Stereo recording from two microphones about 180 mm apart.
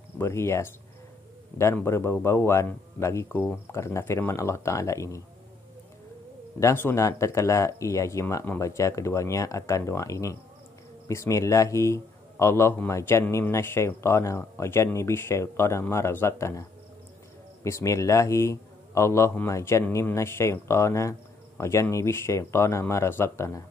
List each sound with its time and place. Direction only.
0.2 s a man's voice: 15° left (ahead or behind)
6.6 s a man's voice: 10° left (ahead or behind)
17.6 s a man's voice: 15° left (ahead or behind)